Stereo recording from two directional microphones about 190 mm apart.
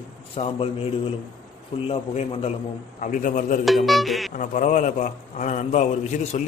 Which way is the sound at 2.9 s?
40° left (ahead or behind).